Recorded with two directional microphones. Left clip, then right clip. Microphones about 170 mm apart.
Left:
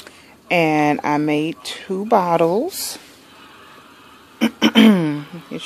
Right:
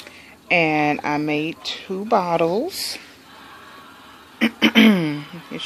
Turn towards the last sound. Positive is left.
turn(degrees=20)  # may be behind; listen again after turning